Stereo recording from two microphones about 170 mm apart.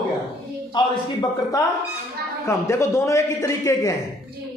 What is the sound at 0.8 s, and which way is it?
A man's voice, 25° left (ahead or behind).